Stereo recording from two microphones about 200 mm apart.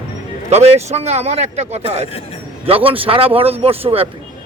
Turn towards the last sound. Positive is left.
turn(degrees=-30)  # may be behind; listen again after turning